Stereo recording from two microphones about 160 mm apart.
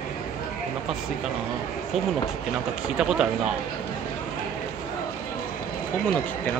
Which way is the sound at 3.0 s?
5° right (ahead or behind).